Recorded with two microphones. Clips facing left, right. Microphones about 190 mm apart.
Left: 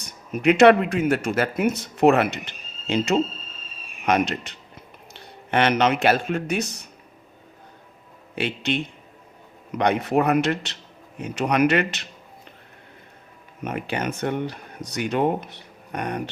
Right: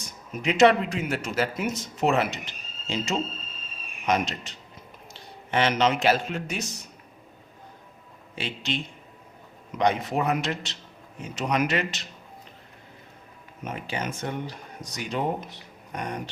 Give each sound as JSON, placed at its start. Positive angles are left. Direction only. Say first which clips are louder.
{"t": 0.0, "sound": "a man's voice", "louder": "left 9 dB", "side_deg": 60}
{"t": 8.4, "sound": "speech", "louder": "left 6 dB", "side_deg": 60}
{"t": 13.7, "sound": "speech", "louder": "left 5 dB", "side_deg": 60}